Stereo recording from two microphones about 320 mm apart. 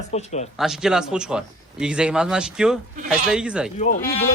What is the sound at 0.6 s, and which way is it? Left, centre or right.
A man's voice, centre.